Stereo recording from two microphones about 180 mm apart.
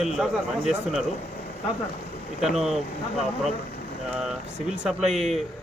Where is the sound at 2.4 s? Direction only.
Centre (ahead or behind).